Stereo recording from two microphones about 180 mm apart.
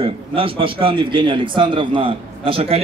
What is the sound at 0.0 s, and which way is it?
A man's voice, 30° right (ahead or behind).